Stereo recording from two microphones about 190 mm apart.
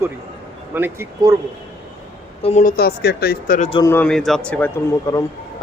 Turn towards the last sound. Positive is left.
turn(degrees=15)  # may be behind; listen again after turning